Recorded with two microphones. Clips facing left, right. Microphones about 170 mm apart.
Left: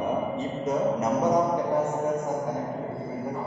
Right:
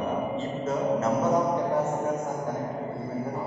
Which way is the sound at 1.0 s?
15° left (ahead or behind).